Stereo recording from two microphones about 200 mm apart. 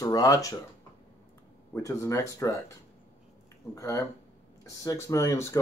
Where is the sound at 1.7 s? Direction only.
15° left (ahead or behind).